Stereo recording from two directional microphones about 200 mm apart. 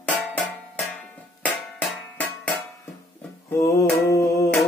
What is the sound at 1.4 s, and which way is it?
Music, 5° left (ahead or behind).